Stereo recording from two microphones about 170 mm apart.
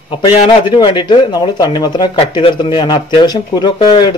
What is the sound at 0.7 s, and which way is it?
Speech, 25° left (ahead or behind).